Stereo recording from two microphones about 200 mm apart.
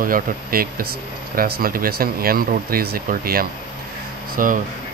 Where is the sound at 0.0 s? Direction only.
45° right (ahead or behind).